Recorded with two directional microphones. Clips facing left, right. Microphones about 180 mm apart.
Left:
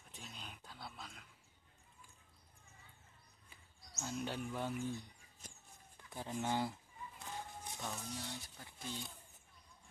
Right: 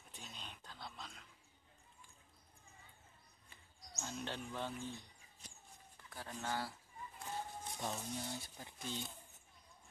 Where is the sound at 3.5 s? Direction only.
5° left (ahead or behind).